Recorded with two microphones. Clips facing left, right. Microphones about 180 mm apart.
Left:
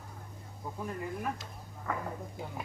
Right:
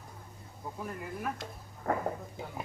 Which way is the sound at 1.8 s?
45° right (ahead or behind).